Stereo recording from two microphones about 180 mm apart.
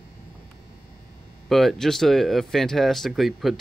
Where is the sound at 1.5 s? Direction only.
Centre (ahead or behind).